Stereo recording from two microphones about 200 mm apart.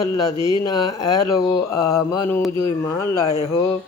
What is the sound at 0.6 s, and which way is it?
Mantra, 20° left (ahead or behind).